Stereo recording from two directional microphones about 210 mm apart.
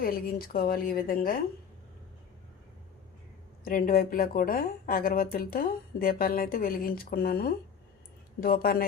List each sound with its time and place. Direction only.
0.0 s a woman's voice: 45° left (ahead or behind)
3.6 s a woman's voice: 40° left (ahead or behind)